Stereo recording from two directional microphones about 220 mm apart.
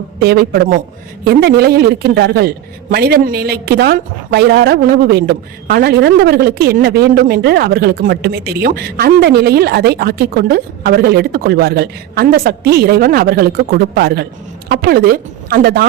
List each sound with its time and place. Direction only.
0.2 s a woman's voice: 45° right (ahead or behind)